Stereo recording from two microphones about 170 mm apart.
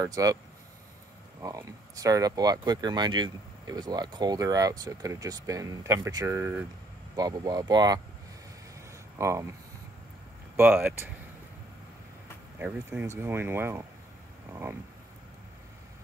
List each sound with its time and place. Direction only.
0.0 s speech: 20° right (ahead or behind)
1.4 s speech: 20° right (ahead or behind)
9.2 s speech: 15° right (ahead or behind)
12.5 s speech: 5° right (ahead or behind)